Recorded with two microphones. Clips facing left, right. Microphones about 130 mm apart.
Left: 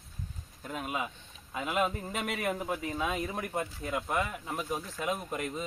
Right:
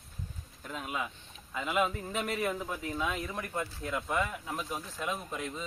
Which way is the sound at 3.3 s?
25° left (ahead or behind).